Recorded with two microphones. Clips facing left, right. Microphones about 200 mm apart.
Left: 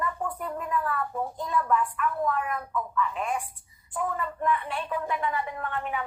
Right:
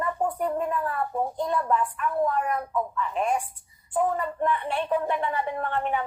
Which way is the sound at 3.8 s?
40° right (ahead or behind).